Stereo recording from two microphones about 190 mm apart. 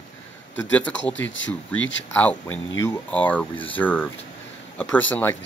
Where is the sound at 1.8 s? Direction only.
75° left (ahead or behind).